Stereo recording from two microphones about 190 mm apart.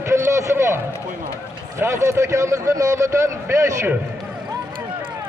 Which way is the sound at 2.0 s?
15° right (ahead or behind).